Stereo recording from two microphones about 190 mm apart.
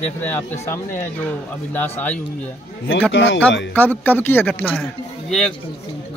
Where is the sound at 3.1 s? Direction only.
70° left (ahead or behind).